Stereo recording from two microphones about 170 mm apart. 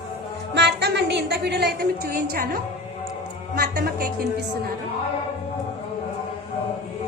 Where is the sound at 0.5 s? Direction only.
85° right; by 4.1 s 60° right (ahead or behind).